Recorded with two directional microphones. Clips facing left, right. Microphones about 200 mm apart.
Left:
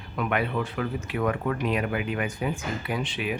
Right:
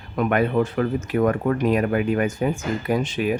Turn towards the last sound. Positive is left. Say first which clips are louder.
# right 7 dB
turn(degrees=-45)  # may be behind; listen again after turning